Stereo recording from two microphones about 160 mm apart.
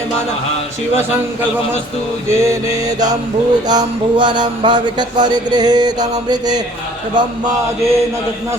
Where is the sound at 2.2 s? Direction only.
15° right (ahead or behind).